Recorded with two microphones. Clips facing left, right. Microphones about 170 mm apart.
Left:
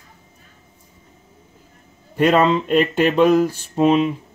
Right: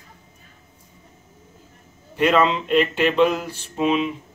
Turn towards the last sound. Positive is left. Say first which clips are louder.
# left 5 dB
turn(degrees=40)  # may be behind; listen again after turning